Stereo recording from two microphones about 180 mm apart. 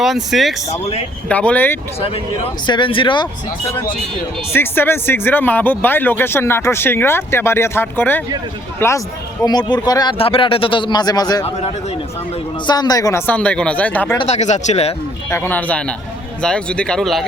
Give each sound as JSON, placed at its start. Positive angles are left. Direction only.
{"t": 0.0, "sound": "speech", "side_deg": 0}
{"t": 0.7, "sound": "speech", "side_deg": 35}
{"t": 1.3, "sound": "speech", "side_deg": 5}
{"t": 2.0, "sound": "speech", "side_deg": 35}
{"t": 4.5, "sound": "speech", "side_deg": 10}
{"t": 12.6, "sound": "speech", "side_deg": 25}
{"t": 14.2, "sound": "speech", "side_deg": 40}
{"t": 15.3, "sound": "speech", "side_deg": 10}